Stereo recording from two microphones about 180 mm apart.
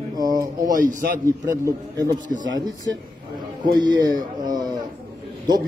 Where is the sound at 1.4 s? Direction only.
20° right (ahead or behind).